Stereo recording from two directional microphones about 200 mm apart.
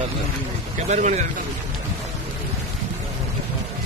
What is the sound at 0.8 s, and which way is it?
Speech, 35° right (ahead or behind).